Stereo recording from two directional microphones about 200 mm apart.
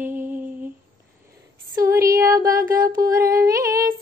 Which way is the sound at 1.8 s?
15° right (ahead or behind).